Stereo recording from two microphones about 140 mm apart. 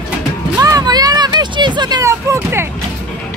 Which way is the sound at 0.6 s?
25° right (ahead or behind).